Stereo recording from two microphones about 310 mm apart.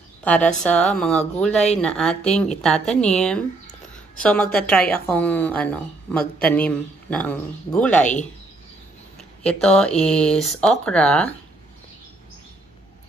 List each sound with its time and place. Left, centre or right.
0.2 s a woman's voice: centre
8.0 s speech: left
9.4 s speech: centre